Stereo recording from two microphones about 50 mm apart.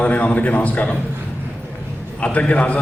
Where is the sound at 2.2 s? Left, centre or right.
Left.